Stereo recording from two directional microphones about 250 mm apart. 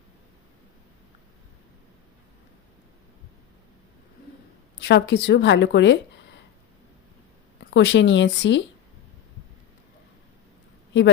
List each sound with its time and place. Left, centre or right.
4.8 s a woman's voice: left
7.7 s a woman's voice: left